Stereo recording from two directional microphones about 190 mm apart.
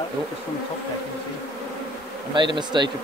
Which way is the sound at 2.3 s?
25° right (ahead or behind).